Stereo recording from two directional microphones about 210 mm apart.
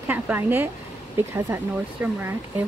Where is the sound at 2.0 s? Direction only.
10° right (ahead or behind).